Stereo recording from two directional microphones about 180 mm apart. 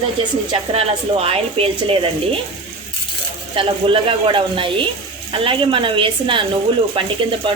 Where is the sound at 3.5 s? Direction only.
30° right (ahead or behind).